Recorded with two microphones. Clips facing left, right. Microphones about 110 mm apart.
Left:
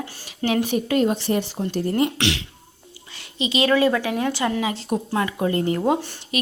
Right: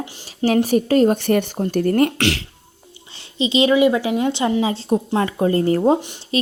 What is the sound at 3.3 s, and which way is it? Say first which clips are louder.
Speech: right 5 dB; 25° right (ahead or behind).